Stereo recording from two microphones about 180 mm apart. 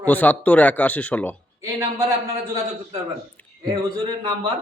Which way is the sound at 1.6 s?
15° right (ahead or behind).